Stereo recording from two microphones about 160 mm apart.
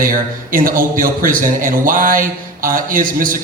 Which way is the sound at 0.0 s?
60° right (ahead or behind).